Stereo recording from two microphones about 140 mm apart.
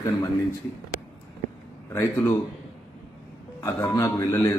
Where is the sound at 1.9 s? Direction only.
15° left (ahead or behind).